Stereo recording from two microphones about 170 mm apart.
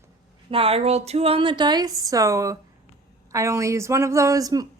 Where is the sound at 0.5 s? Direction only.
35° right (ahead or behind).